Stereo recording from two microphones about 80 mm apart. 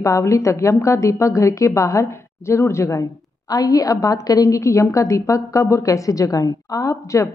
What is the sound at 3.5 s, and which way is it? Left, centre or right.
A woman's voice, left.